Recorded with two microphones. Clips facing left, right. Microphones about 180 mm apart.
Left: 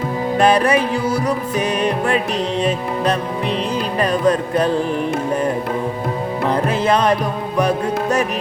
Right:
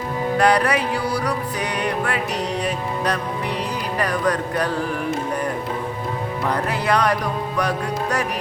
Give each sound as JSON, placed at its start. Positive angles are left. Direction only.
{"t": 0.3, "sound": "music", "side_deg": 25}
{"t": 6.5, "sound": "music", "side_deg": 25}